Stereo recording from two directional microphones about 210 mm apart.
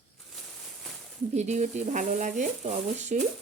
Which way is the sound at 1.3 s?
35° right (ahead or behind).